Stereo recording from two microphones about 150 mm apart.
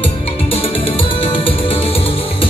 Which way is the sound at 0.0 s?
40° left (ahead or behind).